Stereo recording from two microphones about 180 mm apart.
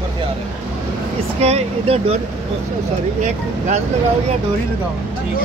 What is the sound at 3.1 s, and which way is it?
Speech, 45° right (ahead or behind).